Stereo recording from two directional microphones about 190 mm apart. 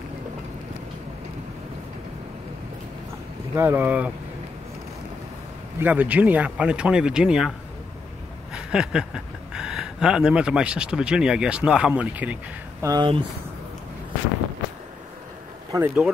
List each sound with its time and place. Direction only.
3.5 s speech: 10° right (ahead or behind)
5.8 s speech: 10° right (ahead or behind)
8.5 s speech: 5° right (ahead or behind)
12.8 s speech: 20° right (ahead or behind)
15.7 s speech: 10° right (ahead or behind)